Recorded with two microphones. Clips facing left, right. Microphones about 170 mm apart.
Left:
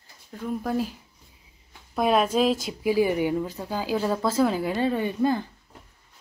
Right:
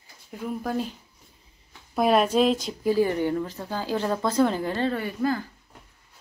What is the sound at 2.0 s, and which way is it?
A woman's voice, centre (ahead or behind).